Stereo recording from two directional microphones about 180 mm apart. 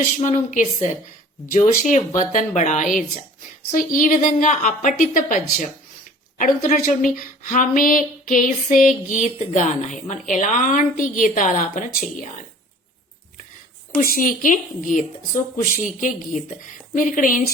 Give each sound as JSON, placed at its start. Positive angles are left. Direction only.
{"t": 0.0, "sound": "a woman's voice", "side_deg": 45}
{"t": 14.0, "sound": "a woman's voice", "side_deg": 50}